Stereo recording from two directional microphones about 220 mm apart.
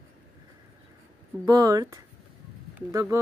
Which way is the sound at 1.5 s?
15° right (ahead or behind).